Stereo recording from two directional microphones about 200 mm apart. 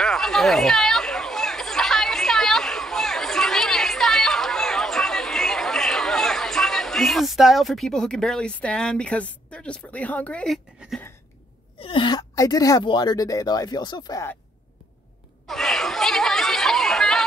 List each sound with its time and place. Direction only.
0.0 s chatter: centre (ahead or behind)
11.8 s speech: 25° left (ahead or behind)
15.4 s chatter: centre (ahead or behind)